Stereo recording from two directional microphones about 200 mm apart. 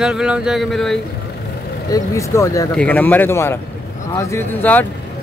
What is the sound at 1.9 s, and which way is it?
Speech, 15° left (ahead or behind).